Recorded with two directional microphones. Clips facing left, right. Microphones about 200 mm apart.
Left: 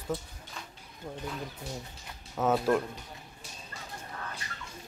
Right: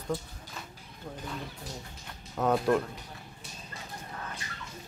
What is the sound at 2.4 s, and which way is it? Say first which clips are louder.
Speech: even; centre (ahead or behind).